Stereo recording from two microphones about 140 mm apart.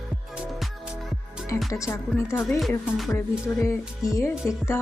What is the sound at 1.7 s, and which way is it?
Speech, 20° left (ahead or behind).